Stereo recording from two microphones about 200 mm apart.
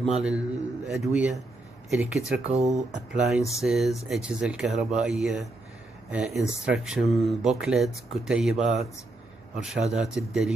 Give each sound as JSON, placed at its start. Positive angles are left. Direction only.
{"t": 0.0, "sound": "speech", "side_deg": -5}
{"t": 2.5, "sound": "speech", "side_deg": -35}
{"t": 3.1, "sound": "speech", "side_deg": -5}